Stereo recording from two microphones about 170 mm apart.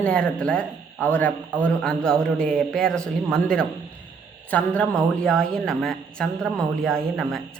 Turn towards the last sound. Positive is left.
turn(degrees=5)  # may be behind; listen again after turning